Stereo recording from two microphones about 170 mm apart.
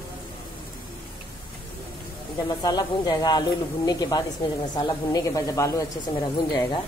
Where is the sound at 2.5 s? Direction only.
25° left (ahead or behind).